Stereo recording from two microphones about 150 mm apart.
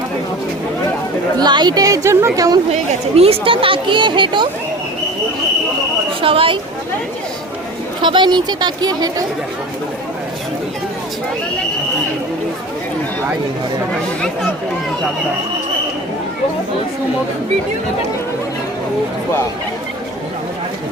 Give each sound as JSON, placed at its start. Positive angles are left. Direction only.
{"t": 1.4, "sound": "a woman's voice", "side_deg": -30}
{"t": 2.7, "sound": "speech", "side_deg": -40}
{"t": 6.2, "sound": "speech", "side_deg": -35}
{"t": 8.0, "sound": "a woman's voice", "side_deg": -30}